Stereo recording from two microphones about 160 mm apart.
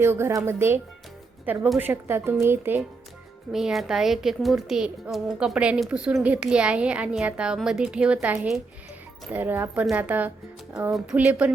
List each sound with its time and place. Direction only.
0.0 s a woman's voice: 15° right (ahead or behind)
3.5 s a woman's voice: centre (ahead or behind)